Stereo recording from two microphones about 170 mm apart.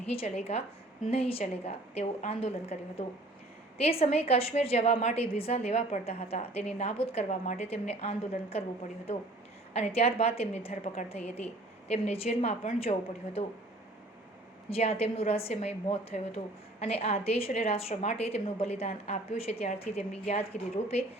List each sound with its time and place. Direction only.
0.0 s a woman's voice: 35° left (ahead or behind)
3.8 s a woman's voice: 35° left (ahead or behind)
9.7 s a woman's voice: 35° left (ahead or behind)
14.7 s a woman's voice: 35° left (ahead or behind)